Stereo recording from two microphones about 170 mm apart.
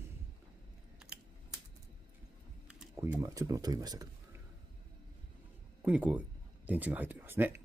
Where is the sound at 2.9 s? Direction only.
15° right (ahead or behind).